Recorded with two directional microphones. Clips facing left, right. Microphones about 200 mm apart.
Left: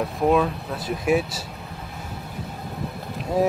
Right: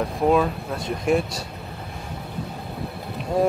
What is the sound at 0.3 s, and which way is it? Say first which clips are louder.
Speech: right 1 dB; 5° left (ahead or behind).